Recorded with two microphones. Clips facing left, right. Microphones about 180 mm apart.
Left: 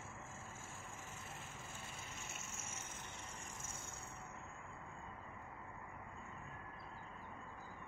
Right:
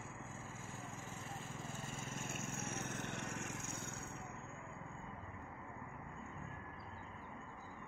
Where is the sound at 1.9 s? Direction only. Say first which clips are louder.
Right 7 dB; 45° right (ahead or behind); by 3.9 s 65° right (ahead or behind).